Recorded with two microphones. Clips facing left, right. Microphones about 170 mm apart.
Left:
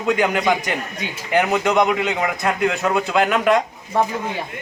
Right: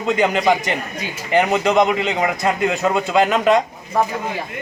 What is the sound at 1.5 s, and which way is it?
A man's voice, 20° right (ahead or behind).